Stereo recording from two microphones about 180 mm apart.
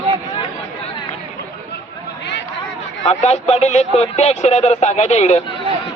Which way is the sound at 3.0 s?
40° left (ahead or behind).